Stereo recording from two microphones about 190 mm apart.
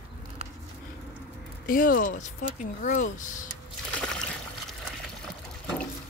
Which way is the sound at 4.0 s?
5° left (ahead or behind).